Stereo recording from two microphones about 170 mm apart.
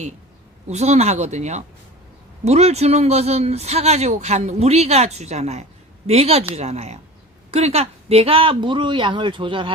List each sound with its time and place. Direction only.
0.7 s speech: 40° right (ahead or behind)